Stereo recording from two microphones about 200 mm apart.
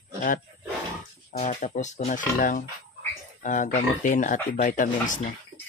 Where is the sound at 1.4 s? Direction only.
35° left (ahead or behind).